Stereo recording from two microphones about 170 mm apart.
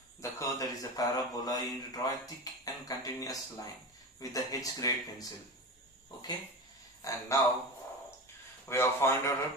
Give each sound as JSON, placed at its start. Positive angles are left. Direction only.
{"t": 0.2, "sound": "speech", "side_deg": 20}
{"t": 7.0, "sound": "speech", "side_deg": 20}
{"t": 8.6, "sound": "a man's voice", "side_deg": 15}